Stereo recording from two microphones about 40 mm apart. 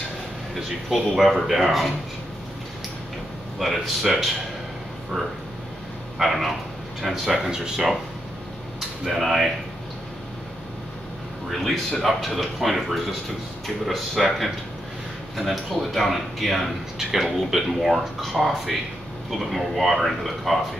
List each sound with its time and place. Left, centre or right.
0.6 s speech: centre
3.5 s speech: centre
6.1 s speech: centre
7.4 s speech: centre
9.0 s speech: centre
12.0 s speech: centre